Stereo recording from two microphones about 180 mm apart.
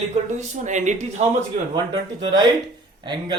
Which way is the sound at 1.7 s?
25° right (ahead or behind).